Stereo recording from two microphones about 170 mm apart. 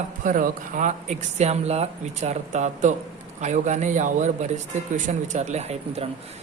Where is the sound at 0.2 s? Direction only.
50° right (ahead or behind).